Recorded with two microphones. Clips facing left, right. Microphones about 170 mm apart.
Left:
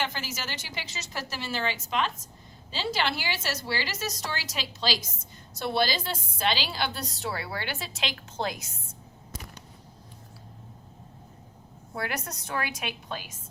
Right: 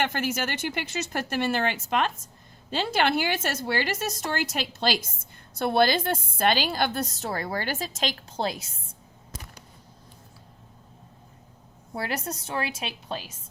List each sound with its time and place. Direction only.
0.0 s a woman's voice: 55° right (ahead or behind); by 8.9 s 30° right (ahead or behind)
11.9 s a woman's voice: 30° right (ahead or behind)